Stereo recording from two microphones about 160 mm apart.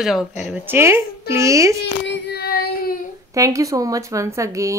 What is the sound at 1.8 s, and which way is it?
Child singing, 90° left.